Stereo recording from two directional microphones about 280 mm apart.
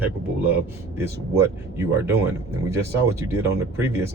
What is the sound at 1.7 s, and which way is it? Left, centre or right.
Speech, centre.